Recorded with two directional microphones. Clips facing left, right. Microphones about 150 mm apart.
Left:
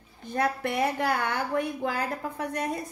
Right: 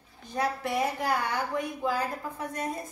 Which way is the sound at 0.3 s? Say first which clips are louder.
Left 2 dB; 60° left (ahead or behind).